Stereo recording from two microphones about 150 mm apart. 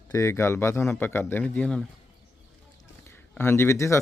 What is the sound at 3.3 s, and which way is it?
Speech, 15° left (ahead or behind).